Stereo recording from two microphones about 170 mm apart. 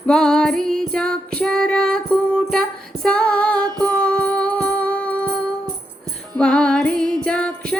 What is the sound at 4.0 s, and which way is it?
Music, 5° left (ahead or behind).